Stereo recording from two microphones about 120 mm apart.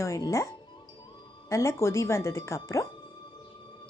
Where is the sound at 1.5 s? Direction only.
25° left (ahead or behind).